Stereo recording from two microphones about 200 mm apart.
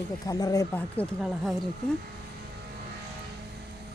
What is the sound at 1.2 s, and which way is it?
Speech, centre (ahead or behind).